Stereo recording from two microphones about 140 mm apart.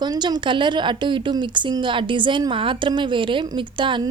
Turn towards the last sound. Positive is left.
turn(degrees=-35)  # may be behind; listen again after turning